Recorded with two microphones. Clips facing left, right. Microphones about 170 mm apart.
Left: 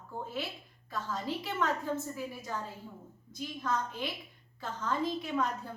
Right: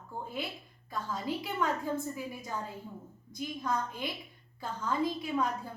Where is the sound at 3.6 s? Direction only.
15° right (ahead or behind).